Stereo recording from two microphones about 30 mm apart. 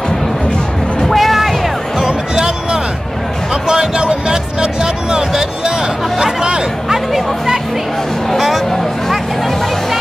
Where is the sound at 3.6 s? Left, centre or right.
Right.